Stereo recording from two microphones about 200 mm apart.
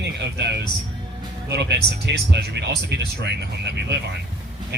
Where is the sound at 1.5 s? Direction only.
60° right (ahead or behind).